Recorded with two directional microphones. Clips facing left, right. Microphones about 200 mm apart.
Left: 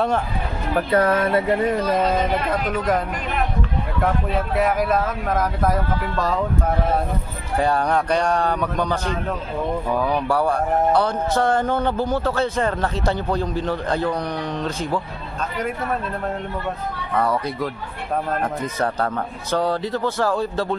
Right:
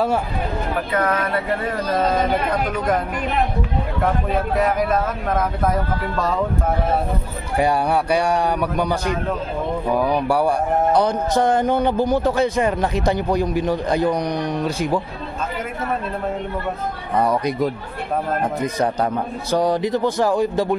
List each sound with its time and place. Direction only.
0.9 s speech: 30° left (ahead or behind)
4.6 s speech: centre (ahead or behind)
7.5 s speech: 10° right (ahead or behind)
17.1 s speech: 15° right (ahead or behind)